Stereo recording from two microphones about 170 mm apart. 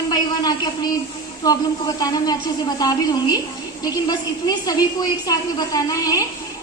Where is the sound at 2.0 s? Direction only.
25° left (ahead or behind).